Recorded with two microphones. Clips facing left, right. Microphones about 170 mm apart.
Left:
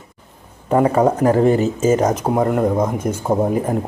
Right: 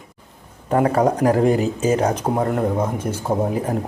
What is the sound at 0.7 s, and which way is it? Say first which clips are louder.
Speech: left 2 dB; 10° left (ahead or behind).